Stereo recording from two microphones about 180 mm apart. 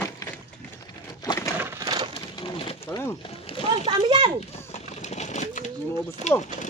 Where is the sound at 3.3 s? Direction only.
30° left (ahead or behind).